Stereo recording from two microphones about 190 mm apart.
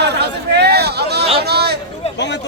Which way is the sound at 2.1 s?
65° left (ahead or behind).